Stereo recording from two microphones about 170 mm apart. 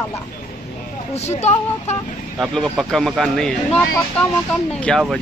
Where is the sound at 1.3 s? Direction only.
40° left (ahead or behind).